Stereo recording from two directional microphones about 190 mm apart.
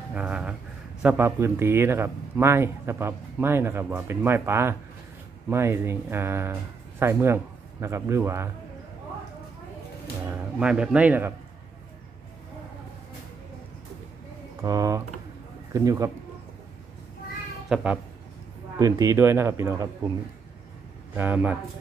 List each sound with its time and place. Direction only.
0.1 s a sound: 5° right (ahead or behind)
1.0 s a man's voice: 10° right (ahead or behind)
10.3 s a man's voice: 5° right (ahead or behind)
14.6 s a man's voice: 20° right (ahead or behind)
17.6 s speech: 5° right (ahead or behind)
18.8 s a man's voice: 20° right (ahead or behind)
21.1 s a man's voice: 10° right (ahead or behind)